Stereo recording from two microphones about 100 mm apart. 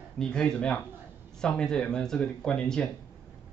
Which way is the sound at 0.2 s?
5° left (ahead or behind).